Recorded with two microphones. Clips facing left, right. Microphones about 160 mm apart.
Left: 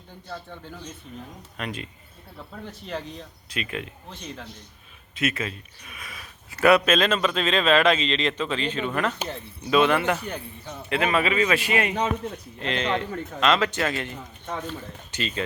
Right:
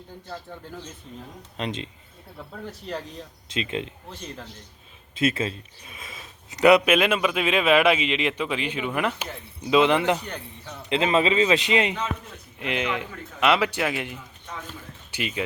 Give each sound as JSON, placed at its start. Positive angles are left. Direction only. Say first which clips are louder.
{"t": 1.5, "sound": "a man's voice", "louder": "right 3 dB", "side_deg": -25}
{"t": 2.8, "sound": "speech", "louder": "left 1 dB", "side_deg": 0}
{"t": 3.5, "sound": "a man's voice", "louder": "right 3 dB", "side_deg": -25}
{"t": 5.1, "sound": "a man's voice", "louder": "right 3 dB", "side_deg": -30}
{"t": 10.2, "sound": "speech", "louder": "left 2 dB", "side_deg": 15}
{"t": 10.8, "sound": "a man's voice", "louder": "right 2 dB", "side_deg": -20}
{"t": 14.4, "sound": "speech", "louder": "left 8 dB", "side_deg": 40}
{"t": 15.1, "sound": "speech", "louder": "even", "side_deg": -10}